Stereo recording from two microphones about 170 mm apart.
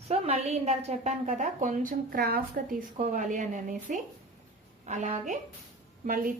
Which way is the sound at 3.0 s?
45° right (ahead or behind).